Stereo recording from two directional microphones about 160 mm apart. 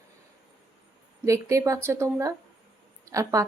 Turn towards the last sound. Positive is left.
turn(degrees=-20)  # may be behind; listen again after turning